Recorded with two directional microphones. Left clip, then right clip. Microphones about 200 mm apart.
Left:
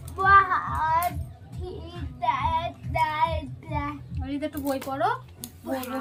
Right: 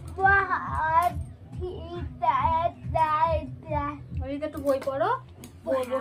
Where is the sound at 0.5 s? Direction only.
20° left (ahead or behind).